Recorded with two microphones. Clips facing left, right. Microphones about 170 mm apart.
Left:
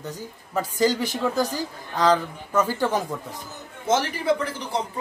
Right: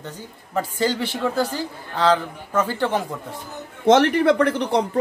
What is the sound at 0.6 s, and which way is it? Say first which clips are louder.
Speech: even; 10° left (ahead or behind).